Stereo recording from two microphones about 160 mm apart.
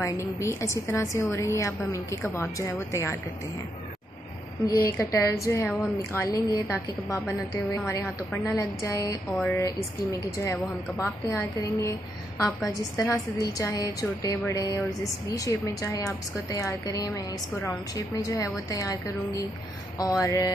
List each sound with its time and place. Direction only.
0.0 s a woman's voice: 20° left (ahead or behind)
4.8 s a woman's voice: 20° left (ahead or behind)
20.0 s a woman's voice: 20° left (ahead or behind)